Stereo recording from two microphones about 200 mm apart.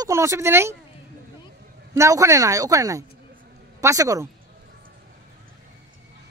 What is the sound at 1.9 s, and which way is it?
Speech, 15° right (ahead or behind).